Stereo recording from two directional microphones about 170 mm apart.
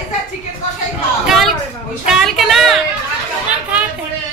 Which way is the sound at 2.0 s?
Centre (ahead or behind).